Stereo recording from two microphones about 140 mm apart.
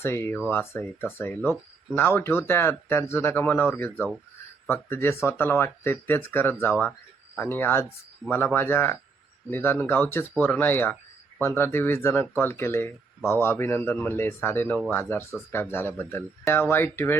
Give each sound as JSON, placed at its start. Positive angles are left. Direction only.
{"t": 0.0, "sound": "speech", "side_deg": 15}